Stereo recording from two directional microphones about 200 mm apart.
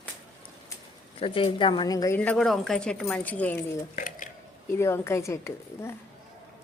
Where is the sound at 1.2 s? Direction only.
25° left (ahead or behind); by 3.6 s 10° left (ahead or behind).